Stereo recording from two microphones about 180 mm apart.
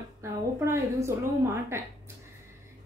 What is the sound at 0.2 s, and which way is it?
A woman's voice, 15° right (ahead or behind).